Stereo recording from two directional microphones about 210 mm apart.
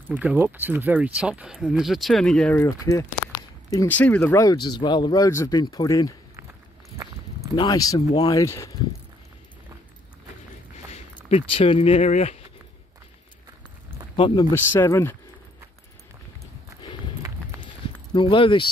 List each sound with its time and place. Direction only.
0.1 s speech: 5° right (ahead or behind); by 6.1 s 15° left (ahead or behind)
7.5 s speech: 15° left (ahead or behind)
10.9 s speech: 30° left (ahead or behind)
14.1 s speech: 25° left (ahead or behind)
14.5 s speech: 10° left (ahead or behind)
17.5 s clip-clop: 15° right (ahead or behind)
18.1 s speech: 25° left (ahead or behind)